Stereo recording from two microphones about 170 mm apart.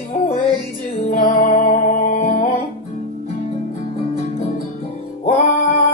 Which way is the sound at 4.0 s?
35° left (ahead or behind).